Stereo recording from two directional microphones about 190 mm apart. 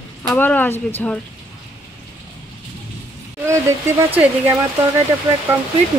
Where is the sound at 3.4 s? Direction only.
15° right (ahead or behind).